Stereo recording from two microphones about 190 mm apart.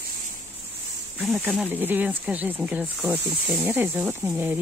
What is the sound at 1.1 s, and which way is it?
Speech, 5° right (ahead or behind).